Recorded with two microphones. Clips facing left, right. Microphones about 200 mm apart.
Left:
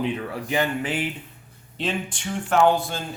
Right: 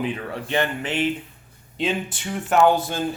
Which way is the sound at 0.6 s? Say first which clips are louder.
Left 1 dB; 10° left (ahead or behind).